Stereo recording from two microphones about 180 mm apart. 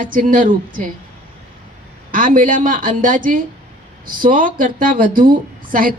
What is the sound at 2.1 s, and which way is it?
A woman's voice, 50° right (ahead or behind).